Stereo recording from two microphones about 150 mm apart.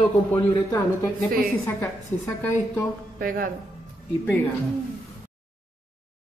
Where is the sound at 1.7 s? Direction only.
15° left (ahead or behind).